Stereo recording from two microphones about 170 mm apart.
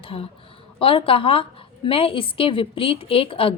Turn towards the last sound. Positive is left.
turn(degrees=35)  # may be behind; listen again after turning